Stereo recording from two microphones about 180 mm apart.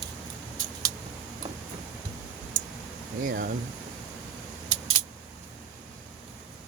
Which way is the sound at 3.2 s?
55° right (ahead or behind).